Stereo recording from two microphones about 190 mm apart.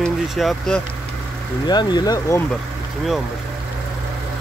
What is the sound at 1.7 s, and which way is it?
Speech, 20° left (ahead or behind).